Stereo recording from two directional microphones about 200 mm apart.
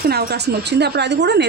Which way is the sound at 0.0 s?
50° right (ahead or behind).